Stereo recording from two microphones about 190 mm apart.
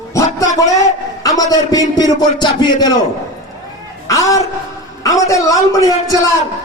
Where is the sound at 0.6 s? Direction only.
15° left (ahead or behind).